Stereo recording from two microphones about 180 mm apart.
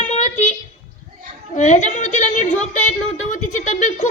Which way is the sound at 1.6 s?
40° left (ahead or behind).